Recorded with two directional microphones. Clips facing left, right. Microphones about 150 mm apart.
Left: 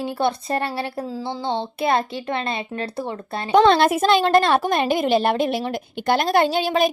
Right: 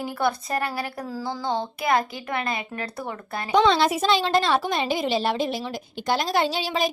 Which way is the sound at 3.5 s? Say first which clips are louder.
Left 4 dB; 55° left (ahead or behind).